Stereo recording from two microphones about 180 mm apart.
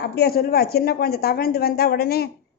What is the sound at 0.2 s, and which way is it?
A woman's voice, 60° left (ahead or behind).